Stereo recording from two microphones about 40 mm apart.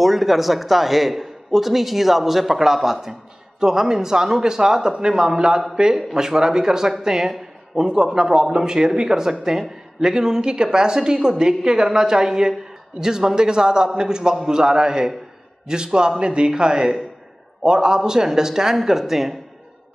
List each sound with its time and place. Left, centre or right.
0.0 s a man's voice: centre